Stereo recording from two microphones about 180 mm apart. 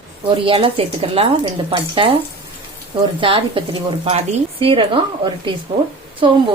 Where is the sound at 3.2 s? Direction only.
30° right (ahead or behind).